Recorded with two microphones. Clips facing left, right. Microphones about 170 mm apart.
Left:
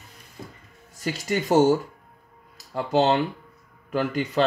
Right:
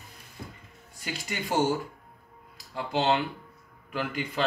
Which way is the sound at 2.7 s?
40° left (ahead or behind).